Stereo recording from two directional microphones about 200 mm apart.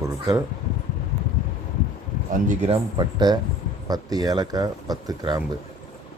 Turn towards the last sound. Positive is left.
turn(degrees=-20)  # may be behind; listen again after turning